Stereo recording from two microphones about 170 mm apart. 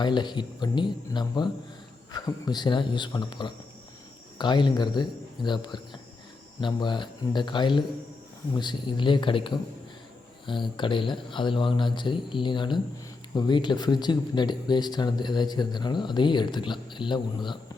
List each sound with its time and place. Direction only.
0.0 s speech: 25° left (ahead or behind)